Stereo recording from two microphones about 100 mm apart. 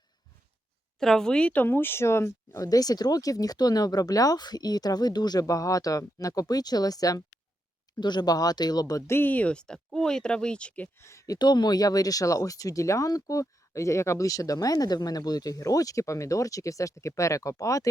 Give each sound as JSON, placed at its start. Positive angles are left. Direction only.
{"t": 0.9, "sound": "speech", "side_deg": 5}
{"t": 11.0, "sound": "speech", "side_deg": 30}
{"t": 11.3, "sound": "speech", "side_deg": 45}